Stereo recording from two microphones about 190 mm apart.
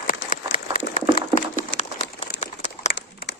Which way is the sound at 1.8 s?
35° left (ahead or behind).